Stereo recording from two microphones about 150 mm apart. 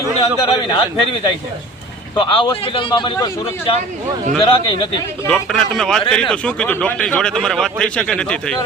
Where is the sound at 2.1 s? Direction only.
35° left (ahead or behind).